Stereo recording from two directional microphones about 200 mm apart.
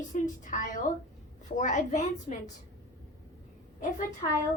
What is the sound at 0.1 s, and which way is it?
A woman's voice, 40° left (ahead or behind).